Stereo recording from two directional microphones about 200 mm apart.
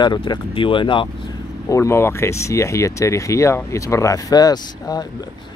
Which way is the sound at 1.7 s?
15° left (ahead or behind).